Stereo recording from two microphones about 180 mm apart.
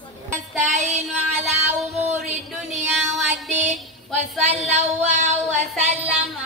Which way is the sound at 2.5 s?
Centre (ahead or behind).